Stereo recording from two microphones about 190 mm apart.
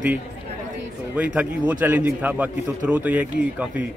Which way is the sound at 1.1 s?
10° right (ahead or behind).